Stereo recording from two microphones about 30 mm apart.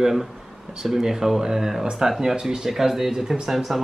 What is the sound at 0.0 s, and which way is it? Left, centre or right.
Speech, centre.